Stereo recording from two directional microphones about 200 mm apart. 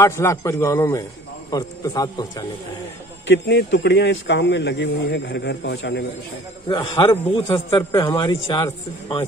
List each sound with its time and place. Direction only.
0.0 s a man's voice: 15° left (ahead or behind)
3.3 s a man's voice: 60° left (ahead or behind)
6.7 s a man's voice: 25° left (ahead or behind)